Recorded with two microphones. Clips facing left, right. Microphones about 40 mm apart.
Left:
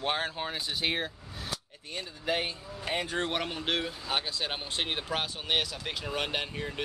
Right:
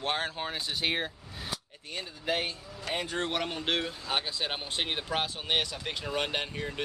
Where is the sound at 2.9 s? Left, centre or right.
Centre.